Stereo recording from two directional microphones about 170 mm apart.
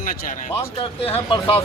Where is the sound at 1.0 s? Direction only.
35° left (ahead or behind).